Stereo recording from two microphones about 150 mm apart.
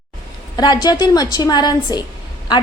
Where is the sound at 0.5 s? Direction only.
30° left (ahead or behind).